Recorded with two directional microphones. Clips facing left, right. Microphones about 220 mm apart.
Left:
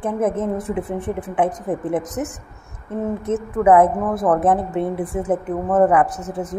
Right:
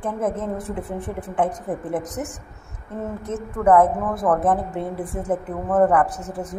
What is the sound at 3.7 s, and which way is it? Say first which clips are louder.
A woman's voice: left 2 dB; 20° left (ahead or behind).